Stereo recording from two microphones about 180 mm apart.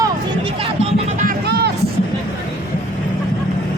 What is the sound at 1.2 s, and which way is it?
Music, 65° right (ahead or behind).